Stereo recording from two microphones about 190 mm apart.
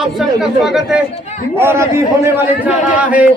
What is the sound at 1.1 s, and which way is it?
Speech, 35° left (ahead or behind).